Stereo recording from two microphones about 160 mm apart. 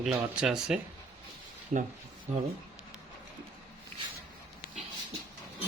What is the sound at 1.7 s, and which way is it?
Speech, 55° right (ahead or behind).